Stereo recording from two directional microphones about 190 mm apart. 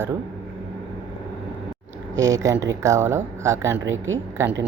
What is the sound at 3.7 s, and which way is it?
Speech, 90° right.